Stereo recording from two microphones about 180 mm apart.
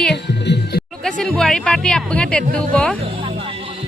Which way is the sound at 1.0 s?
5° left (ahead or behind).